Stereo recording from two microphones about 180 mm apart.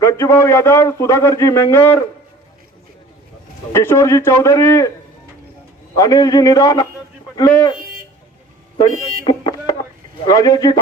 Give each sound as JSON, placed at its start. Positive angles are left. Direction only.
{"t": 0.0, "sound": "a man's voice", "side_deg": 15}
{"t": 3.7, "sound": "a man's voice", "side_deg": 15}
{"t": 6.0, "sound": "a man's voice", "side_deg": 20}
{"t": 9.2, "sound": "a sound", "side_deg": 20}
{"t": 10.2, "sound": "a man's voice", "side_deg": 20}